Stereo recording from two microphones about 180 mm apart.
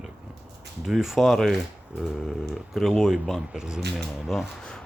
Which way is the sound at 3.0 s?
Centre (ahead or behind).